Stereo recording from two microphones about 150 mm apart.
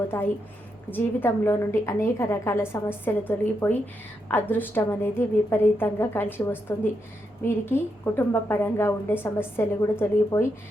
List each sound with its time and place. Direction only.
0.1 s a woman's voice: 15° left (ahead or behind)